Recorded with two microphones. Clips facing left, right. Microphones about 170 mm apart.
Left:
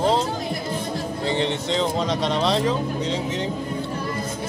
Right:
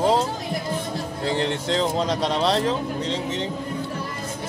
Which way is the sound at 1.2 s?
5° right (ahead or behind).